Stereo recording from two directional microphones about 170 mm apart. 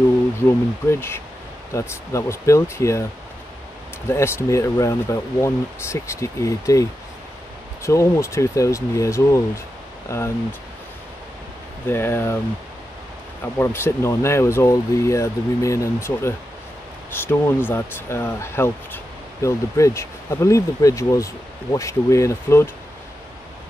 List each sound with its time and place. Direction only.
0.8 s speech: 15° left (ahead or behind)
4.1 s speech: 15° left (ahead or behind)
11.9 s speech: 15° left (ahead or behind)
13.6 s speech: 15° left (ahead or behind)